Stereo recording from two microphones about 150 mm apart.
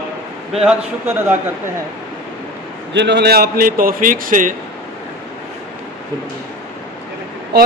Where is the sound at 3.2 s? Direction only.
90° right; by 4.6 s 60° right (ahead or behind).